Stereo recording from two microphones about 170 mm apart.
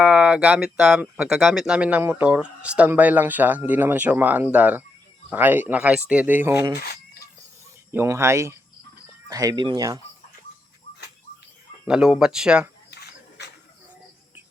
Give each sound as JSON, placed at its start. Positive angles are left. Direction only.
{"t": 0.0, "sound": "speech", "side_deg": -5}
{"t": 6.7, "sound": "chicken", "side_deg": 65}
{"t": 7.9, "sound": "speech", "side_deg": -15}
{"t": 11.9, "sound": "speech", "side_deg": -5}
{"t": 12.9, "sound": "a sound", "side_deg": 75}